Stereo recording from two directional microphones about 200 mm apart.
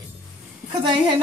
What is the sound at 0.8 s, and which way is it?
Speech, 25° right (ahead or behind).